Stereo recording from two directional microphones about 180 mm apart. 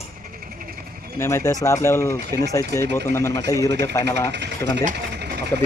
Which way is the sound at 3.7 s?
70° right (ahead or behind).